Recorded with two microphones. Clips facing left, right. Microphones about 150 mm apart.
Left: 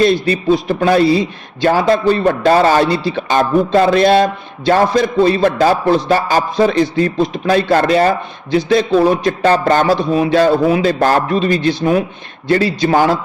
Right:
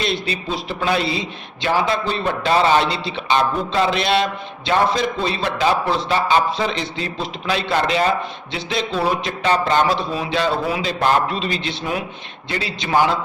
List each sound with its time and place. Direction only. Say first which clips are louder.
0.0 s a man's voice: left 11 dB; 50° left (ahead or behind)